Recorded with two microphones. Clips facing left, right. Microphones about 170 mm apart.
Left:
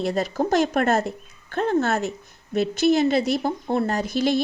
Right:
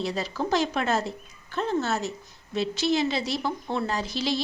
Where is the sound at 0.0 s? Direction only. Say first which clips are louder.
Left 6 dB; 50° left (ahead or behind).